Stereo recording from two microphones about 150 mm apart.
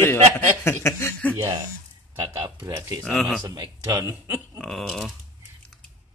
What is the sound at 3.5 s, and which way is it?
Speech, 30° right (ahead or behind).